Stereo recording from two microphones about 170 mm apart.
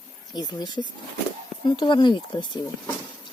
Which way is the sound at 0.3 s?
25° left (ahead or behind).